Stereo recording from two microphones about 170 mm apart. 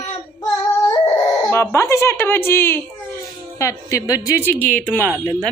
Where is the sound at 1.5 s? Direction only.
15° left (ahead or behind).